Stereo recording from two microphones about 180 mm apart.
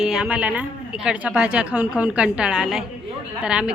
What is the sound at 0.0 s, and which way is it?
A woman's voice, 5° right (ahead or behind).